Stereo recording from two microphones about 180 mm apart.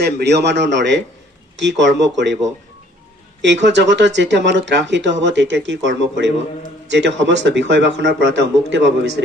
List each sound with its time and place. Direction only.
0.0 s speech: 70° right (ahead or behind)
3.3 s speech: 80° right